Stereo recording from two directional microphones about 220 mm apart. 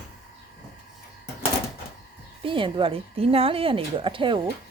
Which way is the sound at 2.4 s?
25° right (ahead or behind).